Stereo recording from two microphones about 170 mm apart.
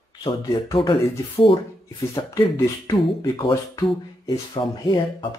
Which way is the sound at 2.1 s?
20° left (ahead or behind).